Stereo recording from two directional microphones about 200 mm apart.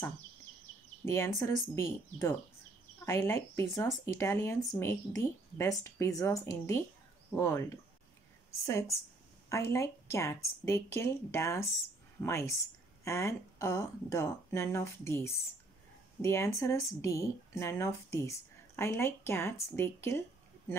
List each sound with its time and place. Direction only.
1.0 s speech: 15° left (ahead or behind)
9.5 s speech: 15° left (ahead or behind)